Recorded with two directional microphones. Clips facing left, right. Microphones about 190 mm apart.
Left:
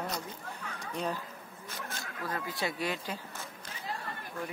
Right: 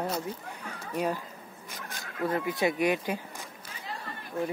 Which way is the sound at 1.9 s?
20° right (ahead or behind).